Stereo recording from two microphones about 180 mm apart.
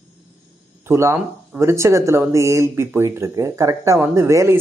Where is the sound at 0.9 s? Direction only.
15° right (ahead or behind).